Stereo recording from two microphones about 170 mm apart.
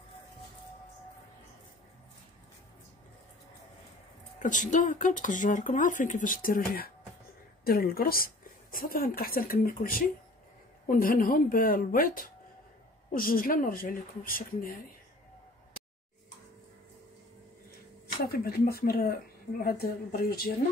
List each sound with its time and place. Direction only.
4.4 s speech: 50° left (ahead or behind)
18.3 s speech: 65° left (ahead or behind)